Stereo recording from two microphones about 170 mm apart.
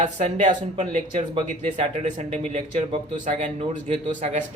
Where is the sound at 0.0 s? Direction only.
45° right (ahead or behind).